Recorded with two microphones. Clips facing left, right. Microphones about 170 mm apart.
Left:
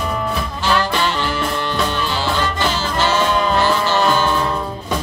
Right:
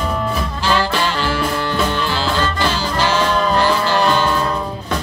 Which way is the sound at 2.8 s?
10° right (ahead or behind).